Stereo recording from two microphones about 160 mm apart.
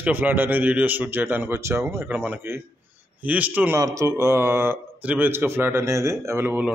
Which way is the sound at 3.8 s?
20° right (ahead or behind).